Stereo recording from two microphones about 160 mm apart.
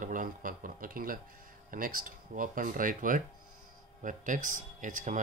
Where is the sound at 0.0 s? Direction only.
55° right (ahead or behind).